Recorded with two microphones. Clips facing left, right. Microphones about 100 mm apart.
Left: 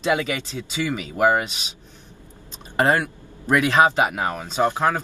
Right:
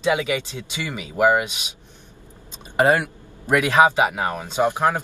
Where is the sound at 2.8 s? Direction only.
20° right (ahead or behind).